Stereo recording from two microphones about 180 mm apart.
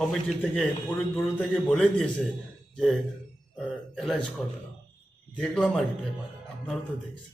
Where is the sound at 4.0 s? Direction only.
Centre (ahead or behind).